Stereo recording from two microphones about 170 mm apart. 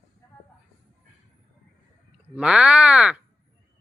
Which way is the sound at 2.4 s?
5° right (ahead or behind).